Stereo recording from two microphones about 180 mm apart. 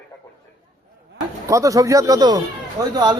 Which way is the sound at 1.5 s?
20° right (ahead or behind).